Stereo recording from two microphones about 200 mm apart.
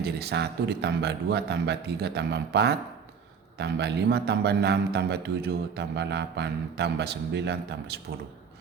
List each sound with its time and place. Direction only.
0.0 s a man's voice: 55° right (ahead or behind)